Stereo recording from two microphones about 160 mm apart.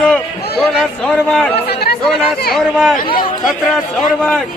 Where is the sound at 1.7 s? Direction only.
80° left.